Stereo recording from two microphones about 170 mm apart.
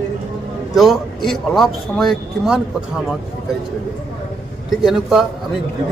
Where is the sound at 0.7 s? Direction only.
Centre (ahead or behind).